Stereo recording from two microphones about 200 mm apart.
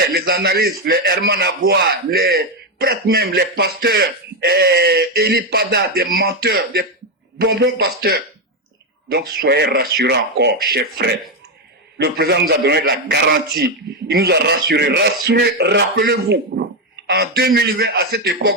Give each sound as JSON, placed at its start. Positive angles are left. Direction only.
{"t": 0.1, "sound": "a man's voice", "side_deg": -50}